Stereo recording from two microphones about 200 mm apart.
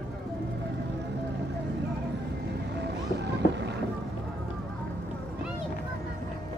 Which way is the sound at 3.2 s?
60° right (ahead or behind).